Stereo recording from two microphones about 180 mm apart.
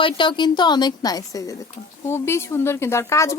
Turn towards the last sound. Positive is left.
turn(degrees=15)  # may be behind; listen again after turning